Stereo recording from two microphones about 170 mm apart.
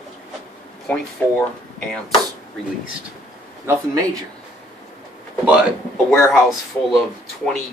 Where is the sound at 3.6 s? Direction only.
20° right (ahead or behind).